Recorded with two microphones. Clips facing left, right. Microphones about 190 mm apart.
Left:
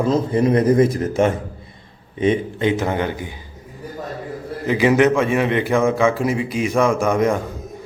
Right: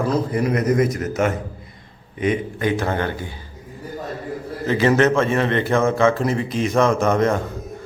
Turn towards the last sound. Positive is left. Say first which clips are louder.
# even
turn(degrees=10)  # may be behind; listen again after turning